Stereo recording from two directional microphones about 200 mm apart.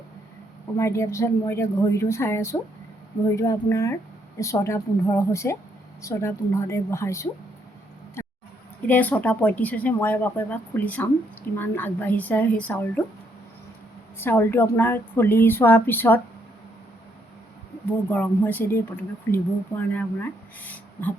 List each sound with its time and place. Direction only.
0.8 s speech: 15° left (ahead or behind)
8.9 s speech: 10° left (ahead or behind)
14.2 s speech: 10° left (ahead or behind)
18.1 s speech: 10° left (ahead or behind)
20.6 s a sound: 10° left (ahead or behind)